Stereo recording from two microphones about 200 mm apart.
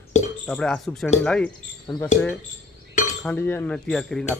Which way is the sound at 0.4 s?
5° left (ahead or behind).